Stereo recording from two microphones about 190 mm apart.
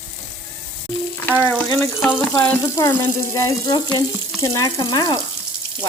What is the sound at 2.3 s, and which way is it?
Water tap, 15° left (ahead or behind).